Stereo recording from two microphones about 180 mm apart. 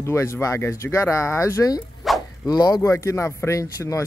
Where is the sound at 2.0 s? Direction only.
Centre (ahead or behind).